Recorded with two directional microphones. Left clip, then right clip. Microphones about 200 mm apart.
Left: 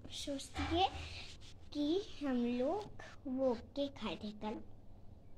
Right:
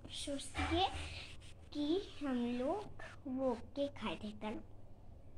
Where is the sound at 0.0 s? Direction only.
10° left (ahead or behind).